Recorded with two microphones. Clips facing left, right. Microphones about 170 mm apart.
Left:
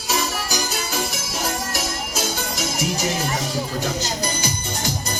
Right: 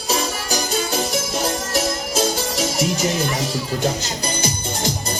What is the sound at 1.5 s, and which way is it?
Music, 35° right (ahead or behind).